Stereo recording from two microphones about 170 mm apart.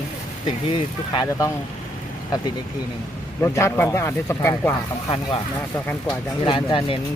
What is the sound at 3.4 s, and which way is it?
Speech, 15° left (ahead or behind).